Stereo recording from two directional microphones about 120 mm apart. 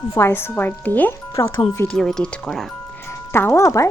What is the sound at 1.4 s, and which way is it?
Speech, 25° left (ahead or behind).